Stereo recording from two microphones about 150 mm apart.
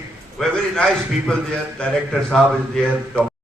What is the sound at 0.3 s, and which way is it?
A man's voice, 5° left (ahead or behind).